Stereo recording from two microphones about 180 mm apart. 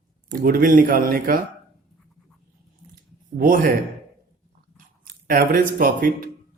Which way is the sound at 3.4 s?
50° right (ahead or behind).